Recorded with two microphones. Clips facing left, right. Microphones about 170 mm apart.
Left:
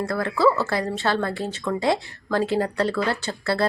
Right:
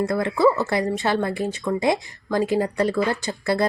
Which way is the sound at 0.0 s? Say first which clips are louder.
Right 2 dB; 20° right (ahead or behind).